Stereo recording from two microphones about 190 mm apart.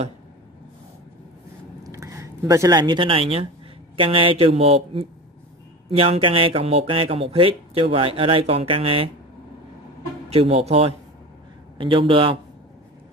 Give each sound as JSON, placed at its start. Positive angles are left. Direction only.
{"t": 1.8, "sound": "speech", "side_deg": -15}
{"t": 10.3, "sound": "speech", "side_deg": -30}